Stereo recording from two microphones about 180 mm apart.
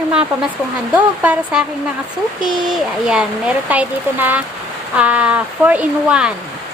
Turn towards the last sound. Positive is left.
turn(degrees=-5)  # may be behind; listen again after turning